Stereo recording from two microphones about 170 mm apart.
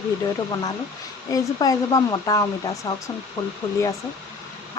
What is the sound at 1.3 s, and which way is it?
Speech, 20° left (ahead or behind).